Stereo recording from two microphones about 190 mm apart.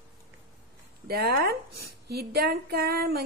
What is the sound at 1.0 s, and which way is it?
A woman's voice, 55° right (ahead or behind).